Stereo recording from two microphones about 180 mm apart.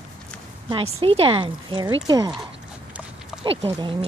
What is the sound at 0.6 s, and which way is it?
Speech, 30° right (ahead or behind).